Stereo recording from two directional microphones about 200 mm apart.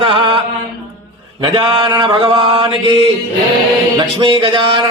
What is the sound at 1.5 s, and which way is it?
Speech, 25° right (ahead or behind).